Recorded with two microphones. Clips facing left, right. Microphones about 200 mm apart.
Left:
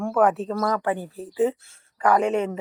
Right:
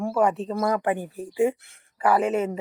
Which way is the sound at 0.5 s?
15° right (ahead or behind).